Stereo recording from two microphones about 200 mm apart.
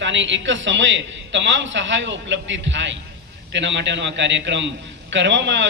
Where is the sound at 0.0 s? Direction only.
65° right (ahead or behind).